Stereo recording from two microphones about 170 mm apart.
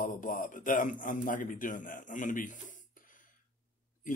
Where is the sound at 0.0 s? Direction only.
50° left (ahead or behind).